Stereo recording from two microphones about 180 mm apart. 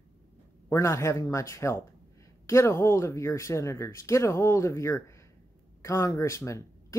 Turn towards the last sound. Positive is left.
turn(degrees=15)  # may be behind; listen again after turning